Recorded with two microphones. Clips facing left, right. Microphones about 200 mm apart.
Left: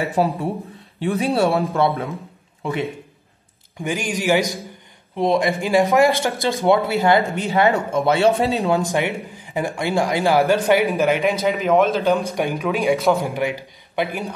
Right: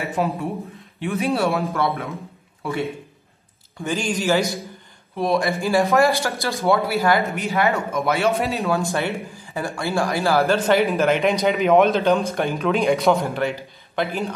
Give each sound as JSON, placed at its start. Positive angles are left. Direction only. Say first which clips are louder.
{"t": 0.2, "sound": "a man's voice", "louder": "left 2 dB", "side_deg": 30}
{"t": 2.6, "sound": "a man's voice", "louder": "left 1 dB", "side_deg": 20}
{"t": 8.7, "sound": "speech", "louder": "left 2 dB", "side_deg": 15}
{"t": 11.4, "sound": "a man's voice", "louder": "right 2 dB", "side_deg": 0}